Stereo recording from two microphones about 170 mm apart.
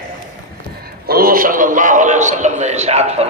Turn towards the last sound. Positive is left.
turn(degrees=-40)  # may be behind; listen again after turning